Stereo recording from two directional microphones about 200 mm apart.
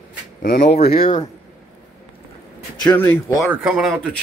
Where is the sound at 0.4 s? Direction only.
45° left (ahead or behind).